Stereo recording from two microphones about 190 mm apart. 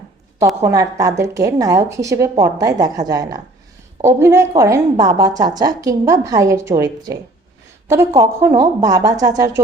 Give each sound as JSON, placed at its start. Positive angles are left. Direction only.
{"t": 0.3, "sound": "a woman's voice", "side_deg": -15}